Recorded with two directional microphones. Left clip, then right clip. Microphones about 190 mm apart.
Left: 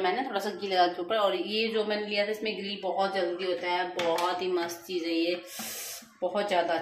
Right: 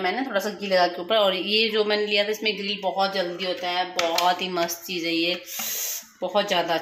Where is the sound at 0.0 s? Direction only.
30° right (ahead or behind).